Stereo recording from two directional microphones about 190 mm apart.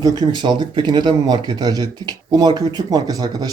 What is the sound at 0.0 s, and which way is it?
Speech, 20° right (ahead or behind).